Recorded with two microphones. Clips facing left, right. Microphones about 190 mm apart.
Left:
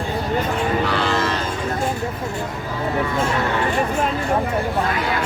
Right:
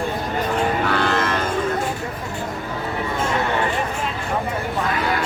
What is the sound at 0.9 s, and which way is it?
Moo, 55° right (ahead or behind).